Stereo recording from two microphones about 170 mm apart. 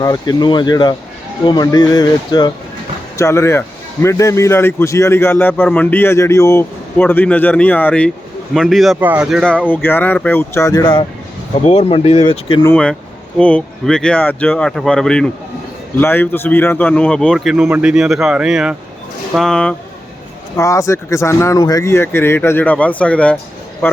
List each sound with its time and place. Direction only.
0.0 s a man's voice: 25° left (ahead or behind); by 9.6 s centre (ahead or behind)
9.6 s a man's voice: 10° left (ahead or behind)
11.6 s speech: 35° left (ahead or behind)
12.6 s a man's voice: 5° left (ahead or behind)
20.6 s a man's voice: 20° left (ahead or behind)